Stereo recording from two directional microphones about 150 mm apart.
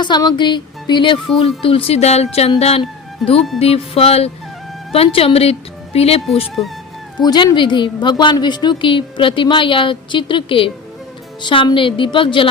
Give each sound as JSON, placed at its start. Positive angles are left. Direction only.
{"t": 0.0, "sound": "a woman's voice", "side_deg": 30}
{"t": 7.2, "sound": "a woman's voice", "side_deg": 30}